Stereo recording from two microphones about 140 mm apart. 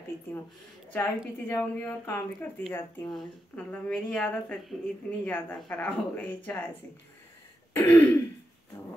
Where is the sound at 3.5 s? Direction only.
10° left (ahead or behind).